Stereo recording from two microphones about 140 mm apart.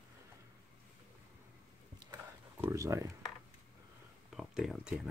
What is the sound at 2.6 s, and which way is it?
Speech, 20° right (ahead or behind).